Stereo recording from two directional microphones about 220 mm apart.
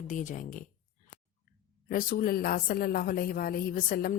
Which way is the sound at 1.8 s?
40° left (ahead or behind).